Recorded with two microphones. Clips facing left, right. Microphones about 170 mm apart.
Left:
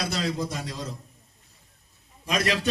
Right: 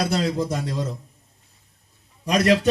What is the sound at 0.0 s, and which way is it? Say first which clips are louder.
Speech: right 6 dB; 55° right (ahead or behind).